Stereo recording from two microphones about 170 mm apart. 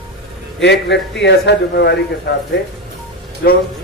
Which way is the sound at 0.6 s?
90° left.